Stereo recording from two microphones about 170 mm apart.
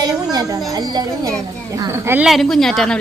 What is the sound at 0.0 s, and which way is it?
Children playing, 20° right (ahead or behind).